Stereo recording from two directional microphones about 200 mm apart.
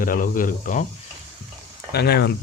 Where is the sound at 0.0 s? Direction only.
45° left (ahead or behind).